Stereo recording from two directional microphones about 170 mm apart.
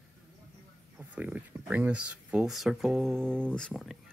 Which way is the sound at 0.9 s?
10° right (ahead or behind).